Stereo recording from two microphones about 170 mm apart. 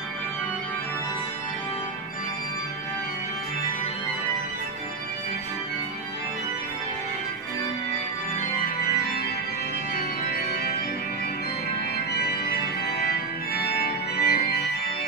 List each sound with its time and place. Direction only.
12.8 s organ: 70° left (ahead or behind)